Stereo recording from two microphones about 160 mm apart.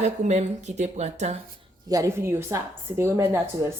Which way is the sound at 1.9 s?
20° right (ahead or behind).